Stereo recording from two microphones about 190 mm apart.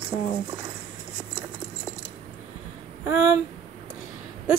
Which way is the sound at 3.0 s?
15° right (ahead or behind).